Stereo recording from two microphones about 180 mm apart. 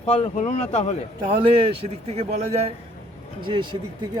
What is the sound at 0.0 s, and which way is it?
Speech, 35° left (ahead or behind).